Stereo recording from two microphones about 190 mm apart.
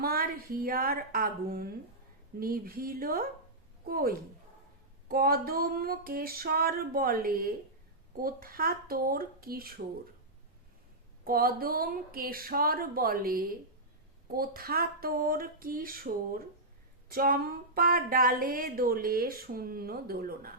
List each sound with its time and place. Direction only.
0.0 s a woman's voice: 50° right (ahead or behind)
11.3 s a woman's voice: 50° right (ahead or behind)